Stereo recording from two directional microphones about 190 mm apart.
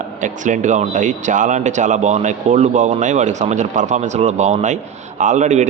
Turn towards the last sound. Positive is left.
turn(degrees=-40)  # may be behind; listen again after turning